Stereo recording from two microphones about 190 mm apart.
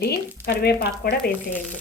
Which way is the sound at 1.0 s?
50° left (ahead or behind).